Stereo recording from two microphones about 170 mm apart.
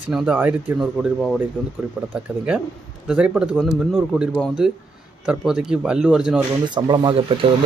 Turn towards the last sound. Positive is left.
turn(degrees=-30)  # may be behind; listen again after turning